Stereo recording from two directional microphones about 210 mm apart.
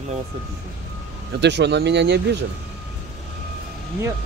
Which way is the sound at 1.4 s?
55° right (ahead or behind).